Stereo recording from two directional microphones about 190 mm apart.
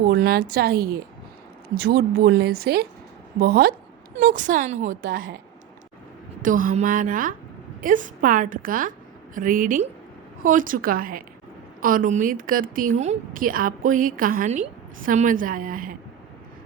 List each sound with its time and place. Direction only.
0.0 s speech: 55° right (ahead or behind)
4.2 s a woman's voice: 45° right (ahead or behind)
6.4 s a woman's voice: 45° right (ahead or behind)